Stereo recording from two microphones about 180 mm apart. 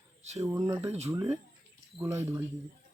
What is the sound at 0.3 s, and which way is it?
Speech, 15° right (ahead or behind).